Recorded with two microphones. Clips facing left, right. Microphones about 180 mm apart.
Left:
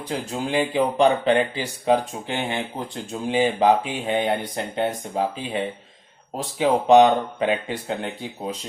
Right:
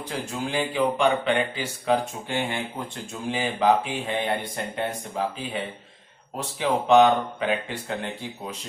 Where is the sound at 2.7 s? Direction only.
35° left (ahead or behind).